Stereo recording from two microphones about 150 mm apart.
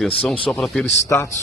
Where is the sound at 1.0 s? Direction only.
20° left (ahead or behind).